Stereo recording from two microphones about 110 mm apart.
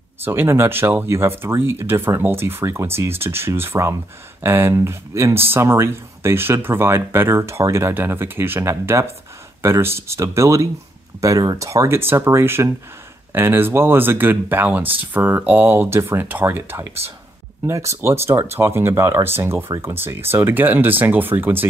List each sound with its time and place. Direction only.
0.2 s speech: 20° right (ahead or behind)